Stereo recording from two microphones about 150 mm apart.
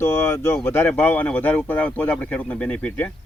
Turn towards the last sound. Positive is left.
turn(degrees=10)  # may be behind; listen again after turning